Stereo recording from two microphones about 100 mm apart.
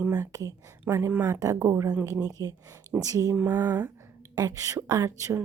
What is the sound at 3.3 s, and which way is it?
Speech, 15° right (ahead or behind).